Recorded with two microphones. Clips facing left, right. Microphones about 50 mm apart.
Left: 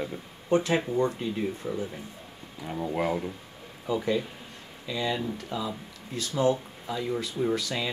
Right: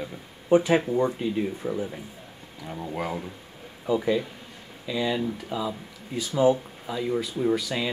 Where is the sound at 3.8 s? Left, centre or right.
Centre.